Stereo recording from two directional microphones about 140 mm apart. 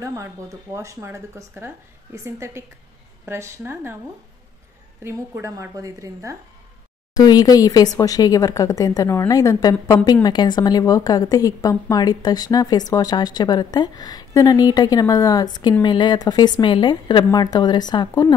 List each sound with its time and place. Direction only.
0.7 s a woman's voice: 20° right (ahead or behind)
5.0 s a woman's voice: 20° right (ahead or behind)
7.2 s a woman's voice: 25° left (ahead or behind)